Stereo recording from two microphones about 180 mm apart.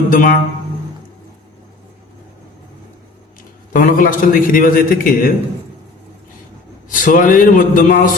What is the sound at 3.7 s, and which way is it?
A man's voice, 50° left (ahead or behind).